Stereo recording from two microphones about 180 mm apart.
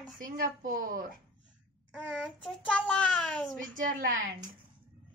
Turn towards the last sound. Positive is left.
turn(degrees=-50)  # may be behind; listen again after turning